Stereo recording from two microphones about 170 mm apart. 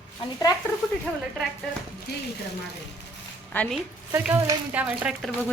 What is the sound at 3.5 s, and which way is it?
Speech, 10° left (ahead or behind).